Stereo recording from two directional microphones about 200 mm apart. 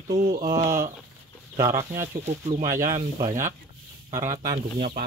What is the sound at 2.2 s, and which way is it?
Speech, 35° right (ahead or behind).